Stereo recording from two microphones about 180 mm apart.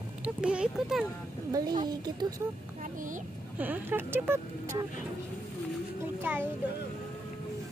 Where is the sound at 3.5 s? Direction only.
10° right (ahead or behind).